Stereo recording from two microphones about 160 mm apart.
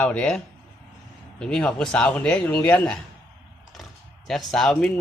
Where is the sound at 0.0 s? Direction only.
10° left (ahead or behind).